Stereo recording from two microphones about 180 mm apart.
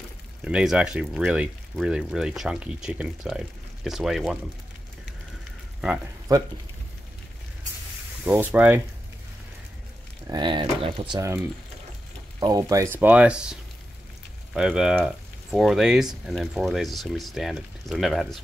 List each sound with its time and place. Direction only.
0.4 s speech: 5° right (ahead or behind)
8.3 s speech: 10° right (ahead or behind)
10.2 s speech: 25° right (ahead or behind); by 18.4 s centre (ahead or behind)